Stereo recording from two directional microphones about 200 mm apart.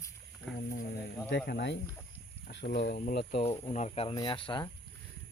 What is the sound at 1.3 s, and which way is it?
Speech, 55° left (ahead or behind).